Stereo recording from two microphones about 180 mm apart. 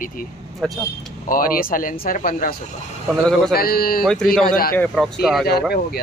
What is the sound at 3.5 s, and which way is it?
Speech, 55° left (ahead or behind).